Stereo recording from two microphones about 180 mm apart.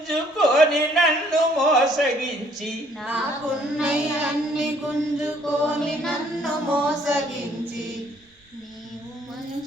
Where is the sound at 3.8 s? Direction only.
5° right (ahead or behind).